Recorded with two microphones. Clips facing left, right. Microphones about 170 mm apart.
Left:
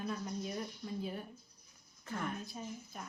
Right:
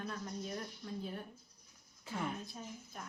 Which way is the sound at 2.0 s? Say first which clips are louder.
Even; 10° right (ahead or behind).